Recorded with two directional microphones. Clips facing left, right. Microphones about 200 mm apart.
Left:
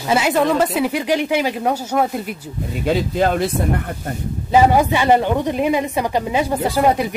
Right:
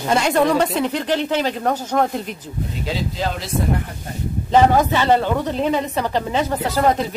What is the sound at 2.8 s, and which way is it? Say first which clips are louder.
Speech: left 8 dB; 55° left (ahead or behind).